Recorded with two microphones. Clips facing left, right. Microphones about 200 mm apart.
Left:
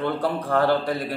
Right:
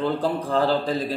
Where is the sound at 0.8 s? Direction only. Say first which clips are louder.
Right 1 dB; 20° right (ahead or behind).